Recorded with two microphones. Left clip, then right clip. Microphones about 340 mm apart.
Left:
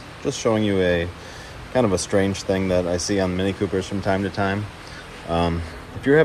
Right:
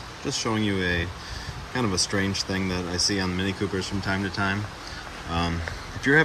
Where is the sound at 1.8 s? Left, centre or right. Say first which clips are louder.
Left 6 dB; centre.